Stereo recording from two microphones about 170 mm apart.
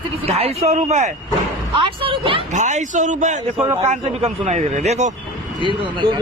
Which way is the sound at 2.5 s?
45° right (ahead or behind).